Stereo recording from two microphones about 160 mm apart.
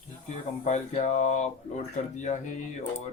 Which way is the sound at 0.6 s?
45° left (ahead or behind).